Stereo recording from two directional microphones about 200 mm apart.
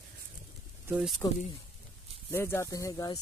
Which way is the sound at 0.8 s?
5° right (ahead or behind).